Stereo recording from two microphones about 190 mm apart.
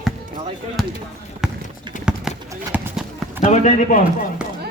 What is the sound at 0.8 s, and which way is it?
Speech, centre (ahead or behind).